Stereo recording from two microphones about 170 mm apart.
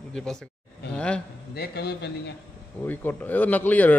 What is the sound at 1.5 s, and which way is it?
Speech, 70° left (ahead or behind).